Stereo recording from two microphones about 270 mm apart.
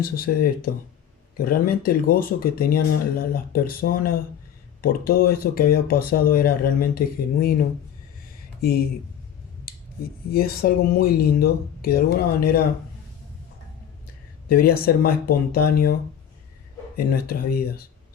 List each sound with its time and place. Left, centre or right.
0.0 s speech: left
10.3 s speech: left
14.4 s speech: left
17.1 s speech: left